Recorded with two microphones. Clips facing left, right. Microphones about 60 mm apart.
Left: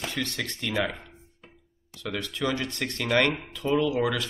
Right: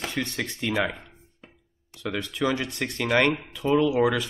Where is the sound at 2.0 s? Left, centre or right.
Centre.